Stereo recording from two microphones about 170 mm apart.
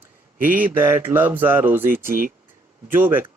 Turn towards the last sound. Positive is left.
turn(degrees=-10)  # may be behind; listen again after turning